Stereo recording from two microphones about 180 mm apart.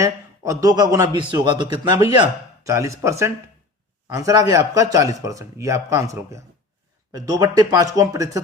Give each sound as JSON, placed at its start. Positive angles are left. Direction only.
{"t": 0.0, "sound": "a man's voice", "side_deg": -20}